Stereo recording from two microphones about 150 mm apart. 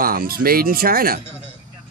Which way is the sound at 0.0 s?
75° right (ahead or behind).